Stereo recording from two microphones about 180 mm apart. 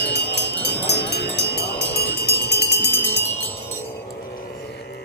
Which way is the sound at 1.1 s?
65° left (ahead or behind).